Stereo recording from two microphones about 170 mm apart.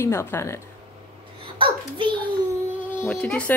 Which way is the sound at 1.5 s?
30° right (ahead or behind).